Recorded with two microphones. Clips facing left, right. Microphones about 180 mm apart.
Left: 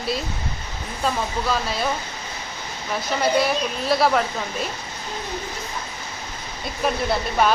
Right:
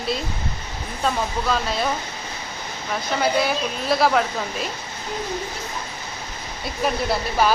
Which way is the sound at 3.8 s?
Centre (ahead or behind).